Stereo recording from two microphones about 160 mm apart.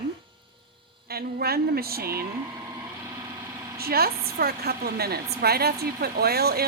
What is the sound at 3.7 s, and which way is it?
A woman's voice, 70° right (ahead or behind).